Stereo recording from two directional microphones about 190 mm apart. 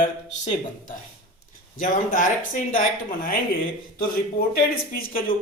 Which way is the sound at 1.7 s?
45° left (ahead or behind).